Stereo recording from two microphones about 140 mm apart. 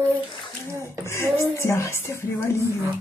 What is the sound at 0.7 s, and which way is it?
Speech, 20° right (ahead or behind).